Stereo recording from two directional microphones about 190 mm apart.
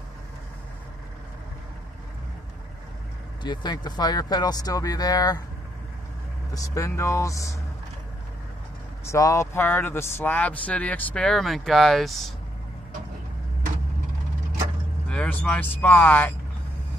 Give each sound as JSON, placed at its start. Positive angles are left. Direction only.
{"t": 3.4, "sound": "speech", "side_deg": 20}
{"t": 6.5, "sound": "speech", "side_deg": 15}
{"t": 9.0, "sound": "speech", "side_deg": 15}
{"t": 15.0, "sound": "speech", "side_deg": 5}